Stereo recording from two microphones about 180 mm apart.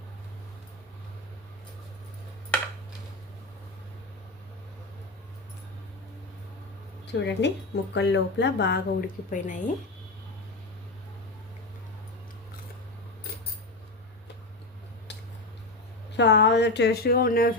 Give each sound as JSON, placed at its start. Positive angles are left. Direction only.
{"t": 7.1, "sound": "speech", "side_deg": 75}
{"t": 9.3, "sound": "a woman's voice", "side_deg": 45}
{"t": 16.1, "sound": "speech", "side_deg": 75}